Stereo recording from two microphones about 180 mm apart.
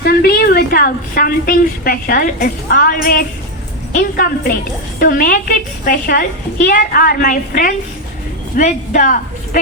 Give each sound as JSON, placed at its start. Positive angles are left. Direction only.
{"t": 0.0, "sound": "a woman's voice", "side_deg": 60}